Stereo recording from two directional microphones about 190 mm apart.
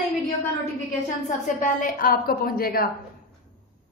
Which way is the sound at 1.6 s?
45° left (ahead or behind).